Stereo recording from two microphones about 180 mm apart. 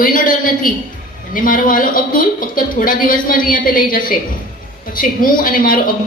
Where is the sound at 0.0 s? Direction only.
50° left (ahead or behind).